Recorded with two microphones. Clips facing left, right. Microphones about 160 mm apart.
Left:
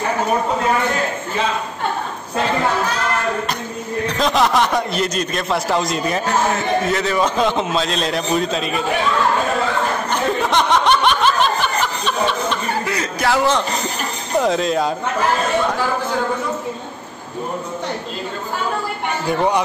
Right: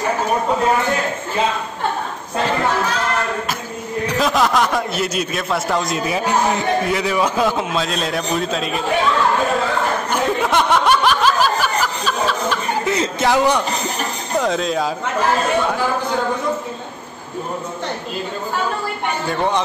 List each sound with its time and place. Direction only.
4.1 s a man's voice: 5° right (ahead or behind)
10.1 s a sound: 5° right (ahead or behind)
12.8 s a man's voice: 25° right (ahead or behind)
14.4 s a man's voice: centre (ahead or behind)